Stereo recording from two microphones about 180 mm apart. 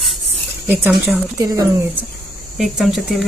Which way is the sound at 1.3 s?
20° right (ahead or behind).